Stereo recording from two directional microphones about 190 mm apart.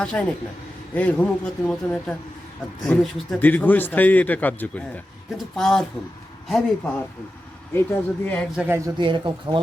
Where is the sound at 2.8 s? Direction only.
Centre (ahead or behind).